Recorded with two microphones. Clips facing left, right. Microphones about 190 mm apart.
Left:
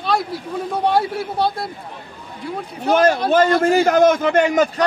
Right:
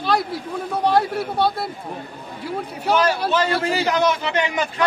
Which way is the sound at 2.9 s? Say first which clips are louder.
Left 6 dB; 50° left (ahead or behind).